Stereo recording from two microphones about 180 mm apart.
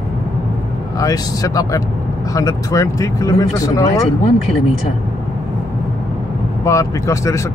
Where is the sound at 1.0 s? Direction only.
20° left (ahead or behind).